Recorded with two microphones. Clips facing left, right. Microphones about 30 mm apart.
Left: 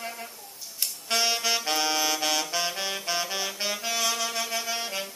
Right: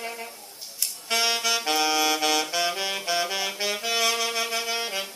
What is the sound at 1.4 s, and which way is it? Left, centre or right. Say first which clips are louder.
Saxophone: right 2 dB; centre.